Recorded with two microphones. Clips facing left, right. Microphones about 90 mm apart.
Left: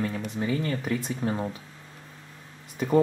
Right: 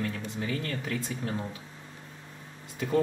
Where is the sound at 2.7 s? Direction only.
20° left (ahead or behind).